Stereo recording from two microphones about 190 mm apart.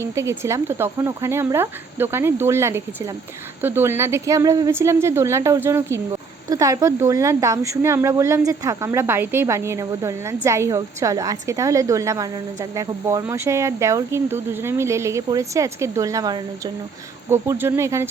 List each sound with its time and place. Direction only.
0.0 s speech: 15° right (ahead or behind)